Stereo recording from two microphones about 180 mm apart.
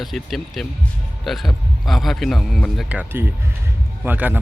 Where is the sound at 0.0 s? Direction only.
Centre (ahead or behind).